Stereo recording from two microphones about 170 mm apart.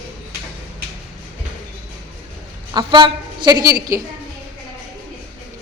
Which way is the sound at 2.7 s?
25° right (ahead or behind).